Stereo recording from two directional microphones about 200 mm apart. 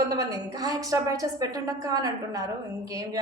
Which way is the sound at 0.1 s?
20° right (ahead or behind).